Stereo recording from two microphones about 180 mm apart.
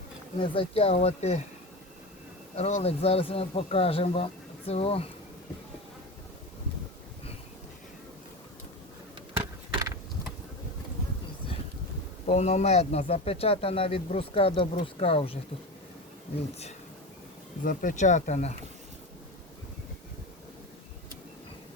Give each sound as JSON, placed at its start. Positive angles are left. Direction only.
{"t": 0.3, "sound": "speech", "side_deg": 30}
{"t": 2.6, "sound": "speech", "side_deg": 35}
{"t": 12.2, "sound": "speech", "side_deg": 40}
{"t": 17.6, "sound": "speech", "side_deg": 45}